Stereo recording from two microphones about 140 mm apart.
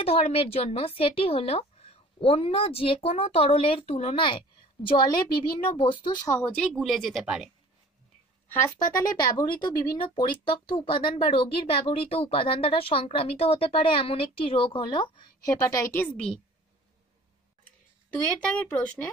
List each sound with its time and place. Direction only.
0.0 s speech: 45° left (ahead or behind)
6.3 s speech: 15° left (ahead or behind)
6.6 s a woman's voice: centre (ahead or behind)
8.6 s speech: 25° left (ahead or behind)
15.6 s speech: 20° left (ahead or behind)
18.7 s speech: 10° left (ahead or behind)